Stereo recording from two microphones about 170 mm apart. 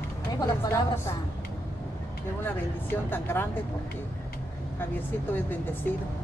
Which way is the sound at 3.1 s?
10° left (ahead or behind).